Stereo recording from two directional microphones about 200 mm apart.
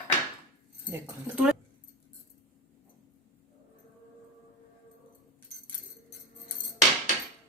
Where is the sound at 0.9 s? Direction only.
10° right (ahead or behind).